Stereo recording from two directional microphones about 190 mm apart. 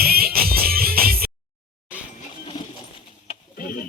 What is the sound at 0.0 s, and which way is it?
Music, 50° right (ahead or behind).